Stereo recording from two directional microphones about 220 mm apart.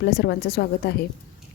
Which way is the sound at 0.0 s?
45° left (ahead or behind).